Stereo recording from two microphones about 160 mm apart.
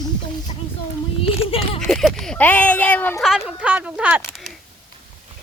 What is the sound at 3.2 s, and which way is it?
Speech, 5° right (ahead or behind).